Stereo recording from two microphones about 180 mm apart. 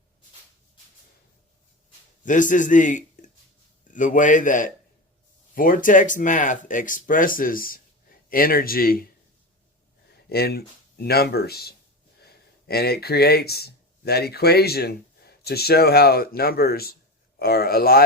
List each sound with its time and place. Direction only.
2.2 s a man's voice: 45° left (ahead or behind)
10.2 s speech: 60° left (ahead or behind)